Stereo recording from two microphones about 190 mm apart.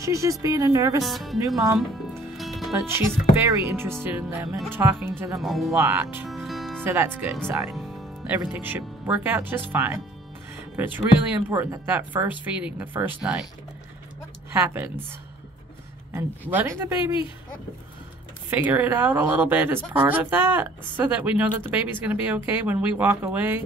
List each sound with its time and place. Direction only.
0.0 s speech: 15° right (ahead or behind)
1.0 s speech: centre (ahead or behind)
1.8 s music: centre (ahead or behind)
3.4 s speech: 10° right (ahead or behind)
5.4 s speech: centre (ahead or behind)
5.8 s speech: 10° right (ahead or behind)
6.2 s music: centre (ahead or behind)
6.8 s speech: 10° right (ahead or behind)
7.7 s music: centre (ahead or behind)
8.5 s speech: 10° right (ahead or behind)
14.5 s speech: 10° right (ahead or behind)
16.1 s speech: 10° right (ahead or behind)
18.5 s speech: 10° right (ahead or behind)